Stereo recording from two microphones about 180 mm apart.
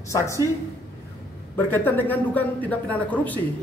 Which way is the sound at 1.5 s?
10° left (ahead or behind).